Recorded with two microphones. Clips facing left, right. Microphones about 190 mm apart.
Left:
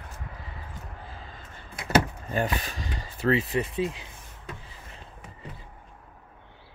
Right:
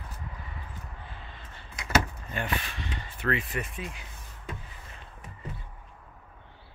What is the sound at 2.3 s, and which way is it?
Speech, 40° left (ahead or behind).